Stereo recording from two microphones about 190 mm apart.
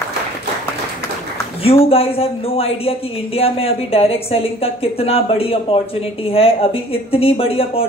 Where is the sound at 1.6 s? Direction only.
30° left (ahead or behind).